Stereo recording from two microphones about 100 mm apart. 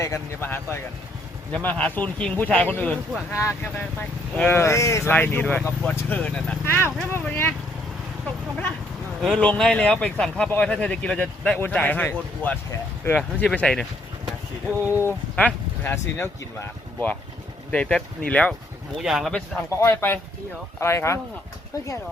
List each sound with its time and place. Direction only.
0.0 s a man's voice: 25° left (ahead or behind)
5.1 s a man's voice: 20° left (ahead or behind)
9.2 s a man's voice: 10° left (ahead or behind)
14.8 s speech: 20° right (ahead or behind)
15.4 s a man's voice: 15° left (ahead or behind)
18.9 s speech: centre (ahead or behind)
19.8 s speech: 25° left (ahead or behind)